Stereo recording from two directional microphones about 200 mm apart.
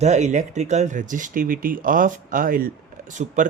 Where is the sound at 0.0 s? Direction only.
35° right (ahead or behind).